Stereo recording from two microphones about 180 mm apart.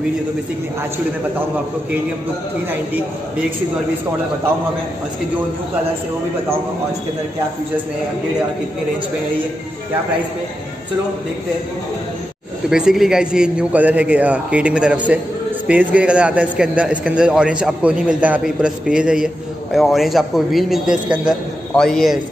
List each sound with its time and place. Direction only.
12.6 s a man's voice: 5° right (ahead or behind)